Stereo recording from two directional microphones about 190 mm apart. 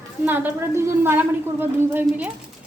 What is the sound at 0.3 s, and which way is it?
A woman's voice, 10° right (ahead or behind).